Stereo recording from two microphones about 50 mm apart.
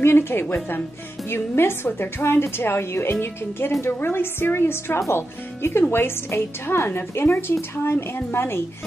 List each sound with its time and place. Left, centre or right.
0.0 s speech: left